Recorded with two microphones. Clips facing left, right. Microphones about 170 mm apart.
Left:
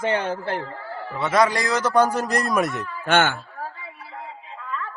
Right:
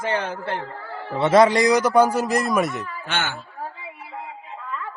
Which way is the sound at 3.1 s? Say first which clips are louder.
Left 9 dB; 55° left (ahead or behind).